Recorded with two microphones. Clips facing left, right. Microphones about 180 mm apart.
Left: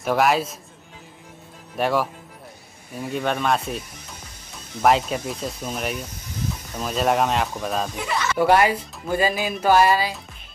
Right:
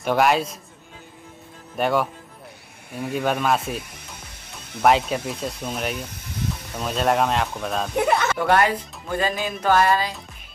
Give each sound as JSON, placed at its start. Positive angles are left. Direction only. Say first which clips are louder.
{"t": 0.0, "sound": "speech", "louder": "even", "side_deg": 0}
{"t": 1.8, "sound": "speech", "louder": "even", "side_deg": 0}
{"t": 4.8, "sound": "speech", "louder": "even", "side_deg": 0}
{"t": 7.9, "sound": "speech", "louder": "right 6 dB", "side_deg": -60}
{"t": 8.4, "sound": "speech", "louder": "left 2 dB", "side_deg": 10}